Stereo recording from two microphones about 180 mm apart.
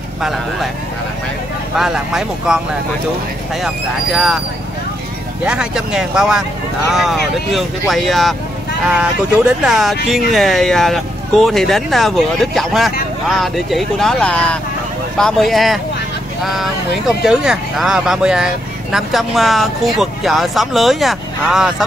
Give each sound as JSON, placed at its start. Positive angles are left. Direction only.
{"t": 1.8, "sound": "speech", "side_deg": -5}
{"t": 3.6, "sound": "speech", "side_deg": -5}
{"t": 5.4, "sound": "speech", "side_deg": -5}